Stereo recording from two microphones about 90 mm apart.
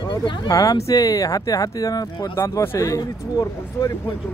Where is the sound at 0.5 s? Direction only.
40° left (ahead or behind).